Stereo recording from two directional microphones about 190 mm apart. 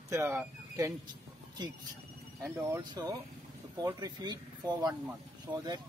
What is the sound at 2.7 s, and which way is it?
Speech, 20° right (ahead or behind).